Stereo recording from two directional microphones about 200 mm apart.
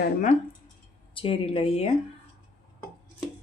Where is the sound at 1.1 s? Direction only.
25° left (ahead or behind).